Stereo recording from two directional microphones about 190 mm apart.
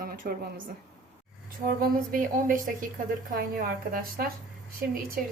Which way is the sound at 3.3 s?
50° right (ahead or behind).